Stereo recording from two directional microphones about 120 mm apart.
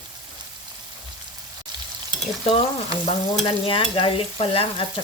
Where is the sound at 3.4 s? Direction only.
45° left (ahead or behind).